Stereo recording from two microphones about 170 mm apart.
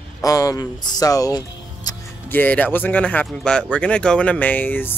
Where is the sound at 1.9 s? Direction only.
20° left (ahead or behind).